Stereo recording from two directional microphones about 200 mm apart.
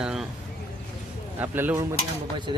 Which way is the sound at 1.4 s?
10° right (ahead or behind).